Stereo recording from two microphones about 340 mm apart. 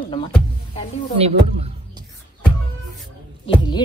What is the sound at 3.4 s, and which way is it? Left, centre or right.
Speech, centre.